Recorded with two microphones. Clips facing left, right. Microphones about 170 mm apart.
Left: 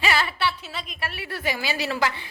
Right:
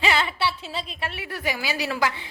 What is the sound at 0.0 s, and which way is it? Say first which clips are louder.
A woman's voice: right 1 dB; 20° right (ahead or behind).